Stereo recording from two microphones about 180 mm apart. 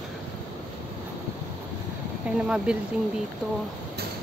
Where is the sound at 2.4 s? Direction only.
5° right (ahead or behind).